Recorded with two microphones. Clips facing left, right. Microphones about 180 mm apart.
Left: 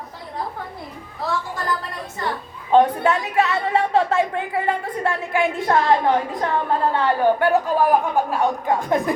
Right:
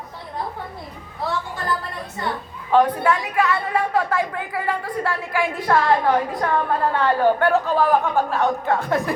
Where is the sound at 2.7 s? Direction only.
25° left (ahead or behind).